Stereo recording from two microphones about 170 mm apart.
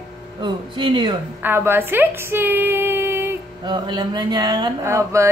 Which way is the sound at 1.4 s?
15° right (ahead or behind).